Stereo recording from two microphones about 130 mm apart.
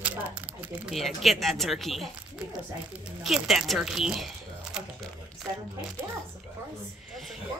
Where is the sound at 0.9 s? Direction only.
Centre (ahead or behind).